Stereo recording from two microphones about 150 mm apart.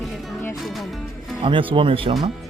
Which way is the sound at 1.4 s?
35° right (ahead or behind).